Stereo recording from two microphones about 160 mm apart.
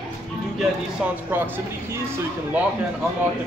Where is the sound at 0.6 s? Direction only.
10° right (ahead or behind).